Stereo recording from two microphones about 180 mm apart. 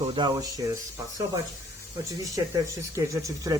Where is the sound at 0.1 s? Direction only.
25° right (ahead or behind).